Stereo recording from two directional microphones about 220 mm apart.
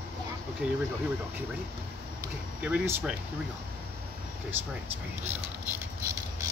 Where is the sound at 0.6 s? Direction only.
5° right (ahead or behind).